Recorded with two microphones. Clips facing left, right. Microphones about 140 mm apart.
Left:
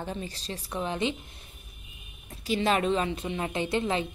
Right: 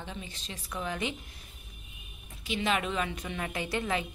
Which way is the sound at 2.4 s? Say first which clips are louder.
Left 5 dB; 40° left (ahead or behind).